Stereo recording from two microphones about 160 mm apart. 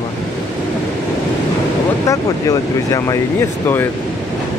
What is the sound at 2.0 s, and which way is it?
Speech, 20° left (ahead or behind).